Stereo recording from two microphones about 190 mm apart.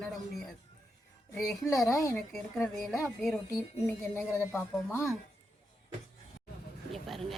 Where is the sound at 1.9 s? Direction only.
15° left (ahead or behind).